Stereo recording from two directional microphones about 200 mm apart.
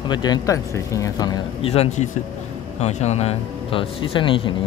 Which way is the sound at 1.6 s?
30° left (ahead or behind).